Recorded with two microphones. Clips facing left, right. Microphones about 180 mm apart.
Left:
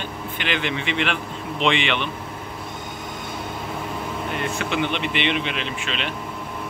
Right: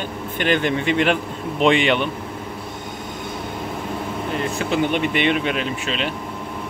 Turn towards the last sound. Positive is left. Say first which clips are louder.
# right 4 dB
turn(degrees=-40)  # may be behind; listen again after turning